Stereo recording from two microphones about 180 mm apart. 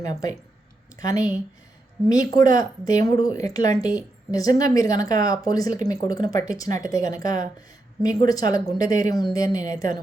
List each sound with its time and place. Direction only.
0.0 s speech: 20° left (ahead or behind)